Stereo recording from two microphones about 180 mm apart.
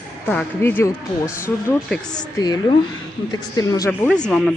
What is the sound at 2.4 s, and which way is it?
Speech, 20° left (ahead or behind).